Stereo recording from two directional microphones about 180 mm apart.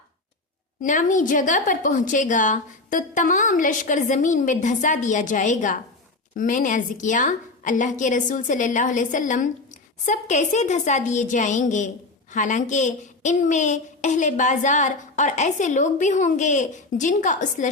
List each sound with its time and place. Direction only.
0.8 s a woman's voice: 45° left (ahead or behind)